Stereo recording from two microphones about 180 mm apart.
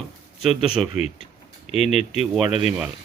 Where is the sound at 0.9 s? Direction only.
40° left (ahead or behind).